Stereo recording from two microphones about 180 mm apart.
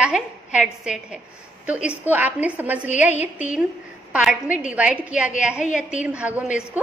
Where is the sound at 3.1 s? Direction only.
40° left (ahead or behind).